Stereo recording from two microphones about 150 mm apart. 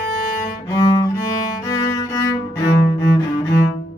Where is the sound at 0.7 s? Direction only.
25° left (ahead or behind).